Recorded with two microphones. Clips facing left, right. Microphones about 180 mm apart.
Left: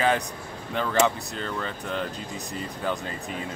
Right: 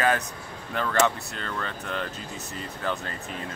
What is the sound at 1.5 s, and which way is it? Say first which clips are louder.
Speech: left 1 dB; 10° left (ahead or behind).